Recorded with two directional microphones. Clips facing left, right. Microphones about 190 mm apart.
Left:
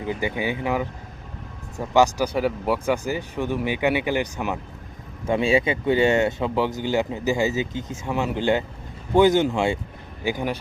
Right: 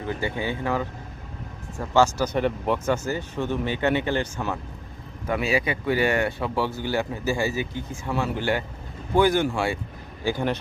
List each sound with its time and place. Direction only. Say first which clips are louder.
0.0 s speech: left 2 dB; 15° left (ahead or behind)
5.2 s speech: left 4 dB; 25° left (ahead or behind)